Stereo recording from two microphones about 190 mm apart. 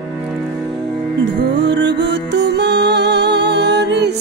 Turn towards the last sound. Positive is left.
turn(degrees=-65)  # may be behind; listen again after turning